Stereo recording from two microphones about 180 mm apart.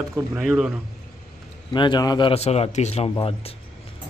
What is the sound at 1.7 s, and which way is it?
Speech, 25° left (ahead or behind).